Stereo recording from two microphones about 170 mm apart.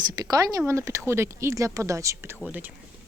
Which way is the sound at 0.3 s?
20° right (ahead or behind).